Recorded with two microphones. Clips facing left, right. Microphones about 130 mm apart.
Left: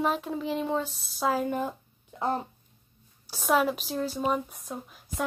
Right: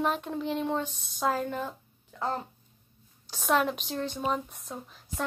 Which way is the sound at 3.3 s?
5° left (ahead or behind).